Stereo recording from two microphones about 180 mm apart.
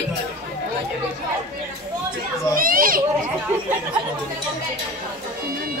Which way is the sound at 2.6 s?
50° right (ahead or behind).